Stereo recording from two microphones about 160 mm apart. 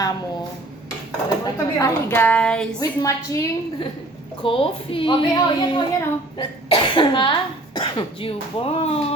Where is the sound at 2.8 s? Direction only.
20° left (ahead or behind).